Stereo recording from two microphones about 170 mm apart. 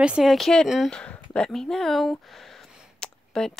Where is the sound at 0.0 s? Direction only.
5° right (ahead or behind).